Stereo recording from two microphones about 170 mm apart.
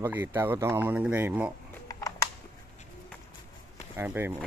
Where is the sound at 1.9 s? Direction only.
20° left (ahead or behind).